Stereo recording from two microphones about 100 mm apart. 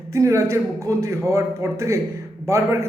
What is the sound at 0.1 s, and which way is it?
A man's voice, 30° right (ahead or behind).